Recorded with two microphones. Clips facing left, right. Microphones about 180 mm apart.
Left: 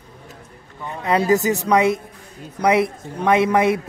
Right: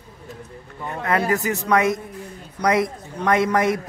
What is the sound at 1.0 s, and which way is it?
Speech, 20° left (ahead or behind).